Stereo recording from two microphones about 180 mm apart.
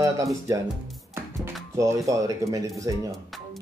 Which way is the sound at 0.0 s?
15° right (ahead or behind).